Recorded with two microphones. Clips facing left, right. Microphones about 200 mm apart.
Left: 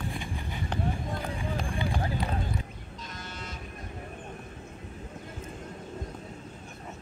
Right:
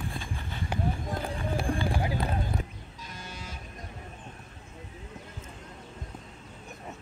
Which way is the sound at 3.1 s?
10° right (ahead or behind).